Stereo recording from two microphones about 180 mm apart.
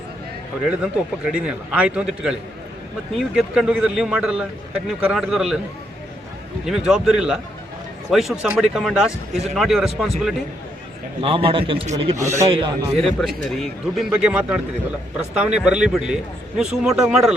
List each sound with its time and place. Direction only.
0.8 s speech: 5° right (ahead or behind)
6.7 s speech: 5° right (ahead or behind)
11.2 s a man's voice: 30° right (ahead or behind)
13.1 s speech: centre (ahead or behind)